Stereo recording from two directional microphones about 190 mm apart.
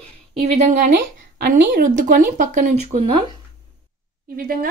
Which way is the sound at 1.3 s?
50° right (ahead or behind).